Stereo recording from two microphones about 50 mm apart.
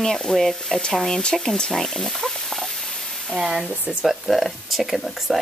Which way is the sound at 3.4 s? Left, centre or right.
Centre.